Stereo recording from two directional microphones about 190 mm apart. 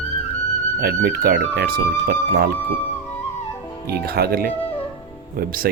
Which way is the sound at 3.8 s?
55° right (ahead or behind).